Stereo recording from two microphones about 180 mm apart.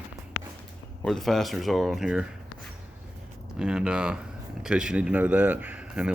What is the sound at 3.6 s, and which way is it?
Speech, 5° right (ahead or behind).